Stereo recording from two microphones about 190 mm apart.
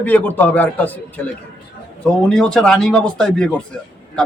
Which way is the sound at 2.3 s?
Centre (ahead or behind).